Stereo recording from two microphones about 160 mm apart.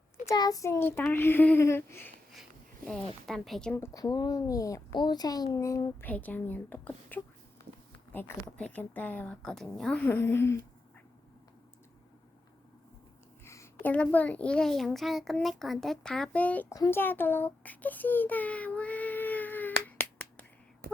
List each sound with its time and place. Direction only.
0.3 s a woman's voice: 25° left (ahead or behind)
2.3 s speech: centre (ahead or behind)
3.8 s speech: 25° left (ahead or behind)
8.4 s a woman's voice: 5° left (ahead or behind)
13.4 s a sound: 20° left (ahead or behind)
13.8 s a child's voice: 10° left (ahead or behind)
16.7 s baby cry: 20° left (ahead or behind)
20.8 s a sound: 75° right (ahead or behind)